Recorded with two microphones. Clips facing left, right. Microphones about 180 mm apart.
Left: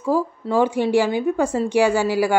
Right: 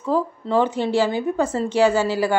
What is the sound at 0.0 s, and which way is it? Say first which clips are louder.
A woman's voice: left 1 dB; 10° left (ahead or behind).